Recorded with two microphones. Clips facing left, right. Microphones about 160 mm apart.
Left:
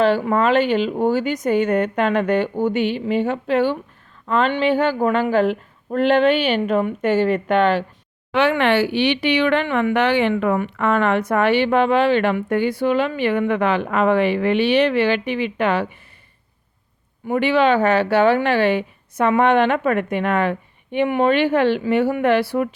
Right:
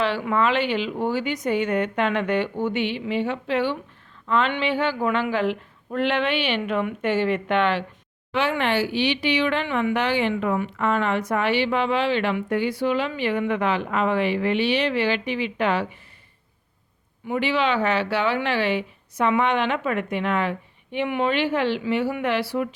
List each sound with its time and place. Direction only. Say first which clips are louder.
0.0 s speech: left 5 dB; 45° left (ahead or behind)
8.3 s speech: left 6 dB; 65° left (ahead or behind)
17.2 s speech: left 6 dB; 55° left (ahead or behind)